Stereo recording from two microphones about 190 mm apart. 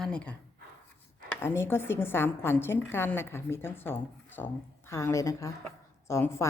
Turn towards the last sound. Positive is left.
turn(degrees=15)  # may be behind; listen again after turning